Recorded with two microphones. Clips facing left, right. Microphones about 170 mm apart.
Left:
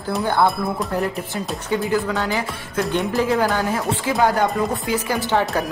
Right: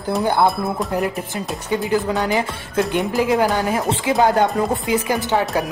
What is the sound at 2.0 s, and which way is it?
Speech, 20° right (ahead or behind).